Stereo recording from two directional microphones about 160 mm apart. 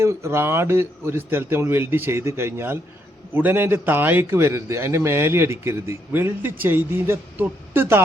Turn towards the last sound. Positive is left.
turn(degrees=-15)  # may be behind; listen again after turning